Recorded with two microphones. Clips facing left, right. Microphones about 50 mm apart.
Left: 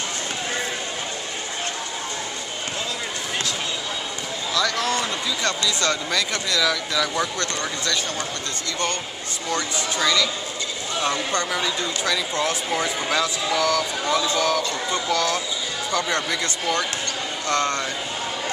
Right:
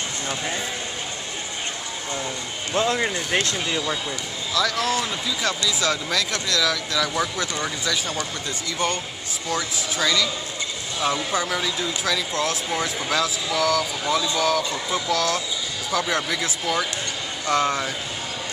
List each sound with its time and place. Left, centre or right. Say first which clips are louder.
2.7 s speech: right 10 dB; right
4.6 s speech: right 1 dB; centre
9.5 s speech: left 1 dB; centre